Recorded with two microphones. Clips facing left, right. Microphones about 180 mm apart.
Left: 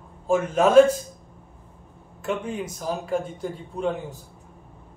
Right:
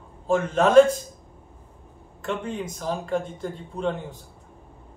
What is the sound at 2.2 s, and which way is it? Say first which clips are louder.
Speech: left 1 dB; 10° left (ahead or behind).